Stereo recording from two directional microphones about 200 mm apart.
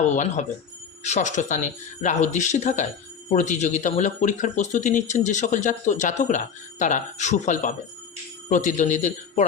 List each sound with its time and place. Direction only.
0.1 s speech: 35° left (ahead or behind)